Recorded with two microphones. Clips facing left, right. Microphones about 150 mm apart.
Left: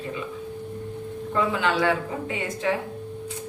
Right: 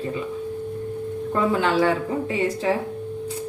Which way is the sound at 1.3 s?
40° right (ahead or behind).